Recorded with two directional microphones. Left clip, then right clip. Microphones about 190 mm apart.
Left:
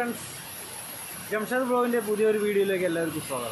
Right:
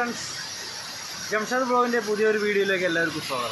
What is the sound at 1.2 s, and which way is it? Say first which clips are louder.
Speech: right 2 dB; centre (ahead or behind).